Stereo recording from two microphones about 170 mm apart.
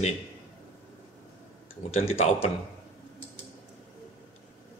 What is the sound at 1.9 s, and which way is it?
Speech, 35° left (ahead or behind).